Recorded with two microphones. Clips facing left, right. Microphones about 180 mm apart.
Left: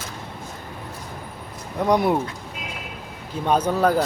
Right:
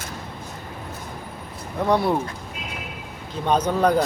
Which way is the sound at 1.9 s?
15° left (ahead or behind).